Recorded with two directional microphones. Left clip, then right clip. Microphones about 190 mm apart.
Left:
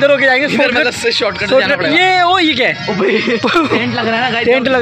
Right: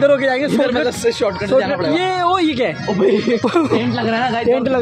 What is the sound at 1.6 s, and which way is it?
A man's voice, centre (ahead or behind).